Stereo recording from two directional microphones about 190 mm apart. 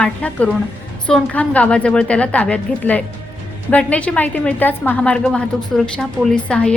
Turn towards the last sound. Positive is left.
turn(degrees=5)  # may be behind; listen again after turning